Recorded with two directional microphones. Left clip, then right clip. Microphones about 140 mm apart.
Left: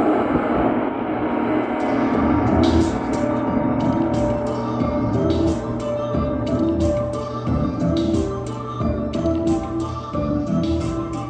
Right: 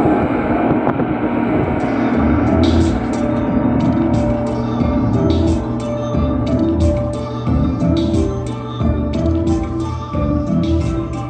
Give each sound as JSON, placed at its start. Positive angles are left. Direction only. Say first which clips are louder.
{"t": 0.0, "sound": "vehicle", "louder": "right 3 dB", "side_deg": -20}
{"t": 1.2, "sound": "music", "louder": "right 2 dB", "side_deg": -20}
{"t": 7.6, "sound": "music", "louder": "right 3 dB", "side_deg": -20}